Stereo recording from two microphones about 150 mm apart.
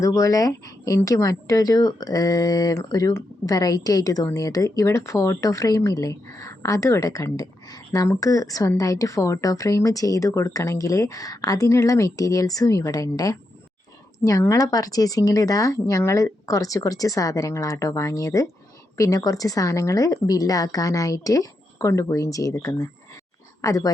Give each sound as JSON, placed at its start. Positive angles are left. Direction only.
{"t": 0.0, "sound": "a woman's voice", "side_deg": 20}